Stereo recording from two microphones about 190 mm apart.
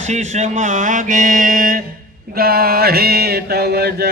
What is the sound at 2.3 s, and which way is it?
Mantra, 55° right (ahead or behind).